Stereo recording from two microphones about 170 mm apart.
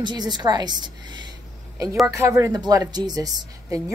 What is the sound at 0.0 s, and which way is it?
A woman's voice, 25° right (ahead or behind).